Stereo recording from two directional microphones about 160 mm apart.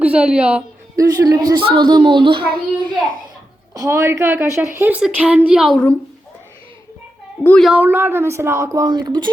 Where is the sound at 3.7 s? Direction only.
20° right (ahead or behind); by 5.9 s 5° left (ahead or behind).